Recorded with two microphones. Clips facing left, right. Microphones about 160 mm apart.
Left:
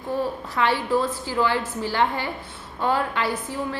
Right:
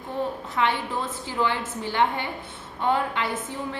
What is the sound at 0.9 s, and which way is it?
A woman's voice, 25° right (ahead or behind).